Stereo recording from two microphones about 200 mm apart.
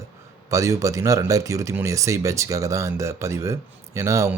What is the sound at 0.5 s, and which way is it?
Speech, 15° right (ahead or behind).